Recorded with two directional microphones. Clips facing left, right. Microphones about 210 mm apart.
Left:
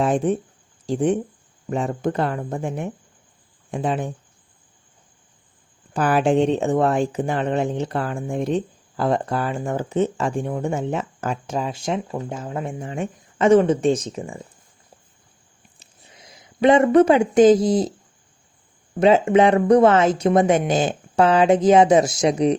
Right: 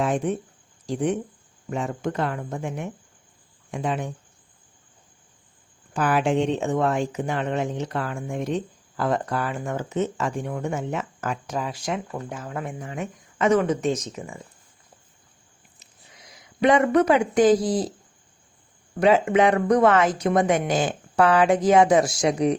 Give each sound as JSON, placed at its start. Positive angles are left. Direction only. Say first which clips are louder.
{"t": 0.0, "sound": "speech", "louder": "left 4 dB", "side_deg": 30}
{"t": 5.9, "sound": "speech", "louder": "left 4 dB", "side_deg": 35}
{"t": 15.8, "sound": "speech", "louder": "left 3 dB", "side_deg": 25}
{"t": 18.9, "sound": "speech", "louder": "left 3 dB", "side_deg": 25}